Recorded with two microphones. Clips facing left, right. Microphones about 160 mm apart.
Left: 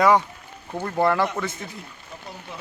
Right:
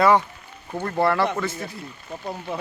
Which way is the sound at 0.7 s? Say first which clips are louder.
Even; 5° left (ahead or behind).